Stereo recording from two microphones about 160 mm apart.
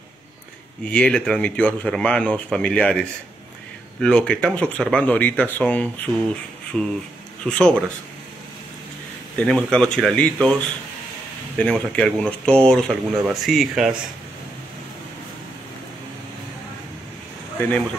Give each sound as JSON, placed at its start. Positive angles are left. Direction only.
{"t": 0.9, "sound": "speech", "side_deg": 5}
{"t": 6.7, "sound": "speech", "side_deg": -5}
{"t": 9.5, "sound": "speech", "side_deg": 5}
{"t": 17.6, "sound": "speech", "side_deg": 5}